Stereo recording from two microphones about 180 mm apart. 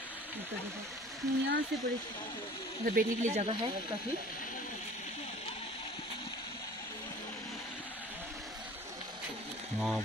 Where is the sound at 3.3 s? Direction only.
35° right (ahead or behind).